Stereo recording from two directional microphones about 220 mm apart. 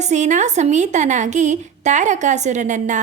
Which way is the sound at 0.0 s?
35° right (ahead or behind).